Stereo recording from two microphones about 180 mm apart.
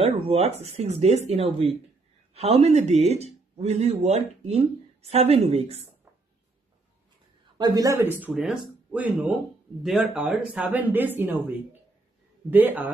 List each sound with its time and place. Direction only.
0.3 s speech: 35° right (ahead or behind)
7.5 s speech: 20° right (ahead or behind)
12.4 s speech: 10° right (ahead or behind)